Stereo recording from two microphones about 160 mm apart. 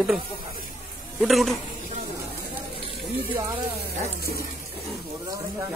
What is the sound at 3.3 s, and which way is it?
Speech, 35° right (ahead or behind).